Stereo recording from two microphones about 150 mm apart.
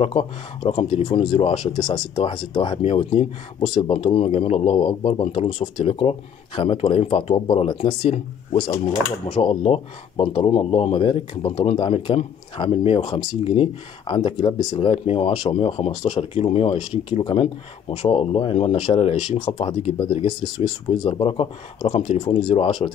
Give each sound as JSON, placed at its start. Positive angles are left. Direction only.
{"t": 0.0, "sound": "speech", "side_deg": 40}
{"t": 3.9, "sound": "speech", "side_deg": 40}
{"t": 20.0, "sound": "speech", "side_deg": 30}